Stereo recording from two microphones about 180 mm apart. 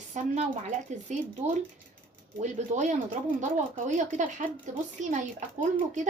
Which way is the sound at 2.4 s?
40° right (ahead or behind).